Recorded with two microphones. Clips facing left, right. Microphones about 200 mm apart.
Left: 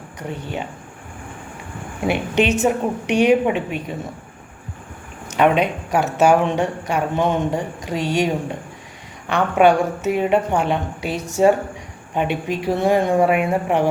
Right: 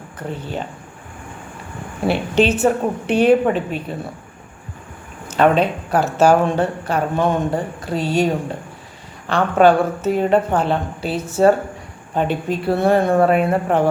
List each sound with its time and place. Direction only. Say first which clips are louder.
0.2 s a woman's voice: right 1 dB; 15° left (ahead or behind)
2.0 s a woman's voice: right 2 dB; 15° left (ahead or behind)
5.4 s a woman's voice: right 1 dB; 15° left (ahead or behind)
9.6 s a woman's voice: right 2 dB; 15° left (ahead or behind)